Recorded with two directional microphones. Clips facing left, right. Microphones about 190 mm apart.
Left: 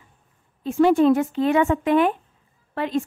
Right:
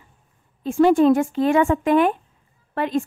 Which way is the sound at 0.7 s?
45° right (ahead or behind).